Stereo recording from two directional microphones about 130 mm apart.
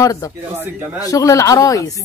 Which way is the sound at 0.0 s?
25° left (ahead or behind).